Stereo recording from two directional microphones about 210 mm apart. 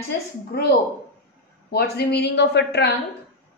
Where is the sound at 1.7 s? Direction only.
50° left (ahead or behind).